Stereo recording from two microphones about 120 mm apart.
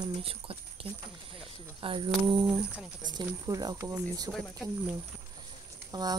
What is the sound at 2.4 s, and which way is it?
Speech, 10° right (ahead or behind).